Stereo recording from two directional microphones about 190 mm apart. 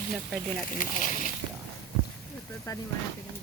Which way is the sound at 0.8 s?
45° left (ahead or behind).